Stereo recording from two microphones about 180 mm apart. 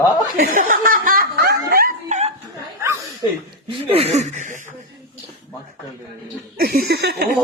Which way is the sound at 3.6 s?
35° right (ahead or behind).